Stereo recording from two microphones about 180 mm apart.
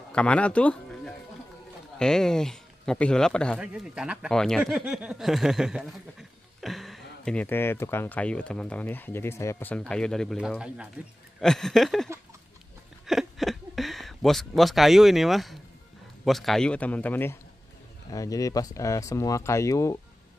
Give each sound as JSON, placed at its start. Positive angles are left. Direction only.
{"t": 0.1, "sound": "speech", "side_deg": 5}
{"t": 13.0, "sound": "a sound", "side_deg": 0}
{"t": 16.3, "sound": "speech", "side_deg": 0}